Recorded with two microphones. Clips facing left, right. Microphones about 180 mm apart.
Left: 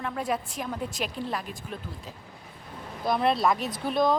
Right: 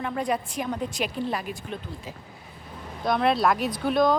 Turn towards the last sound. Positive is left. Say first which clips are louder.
# right 3 dB
turn(degrees=0)  # may be behind; listen again after turning